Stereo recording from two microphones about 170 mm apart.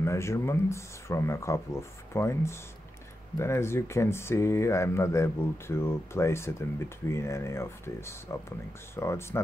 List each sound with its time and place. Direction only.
0.0 s speech: 15° left (ahead or behind)